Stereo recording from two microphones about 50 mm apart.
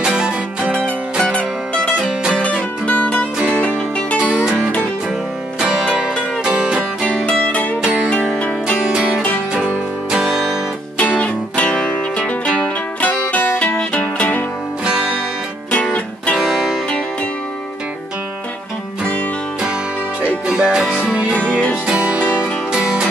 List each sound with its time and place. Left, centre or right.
0.0 s music: centre
0.7 s music: left
2.4 s music: left
4.2 s music: right
5.6 s music: centre
7.2 s music: left
7.8 s music: right
11.0 s music: left
13.1 s music: left
15.7 s music: left
16.3 s music: centre
20.4 s music: centre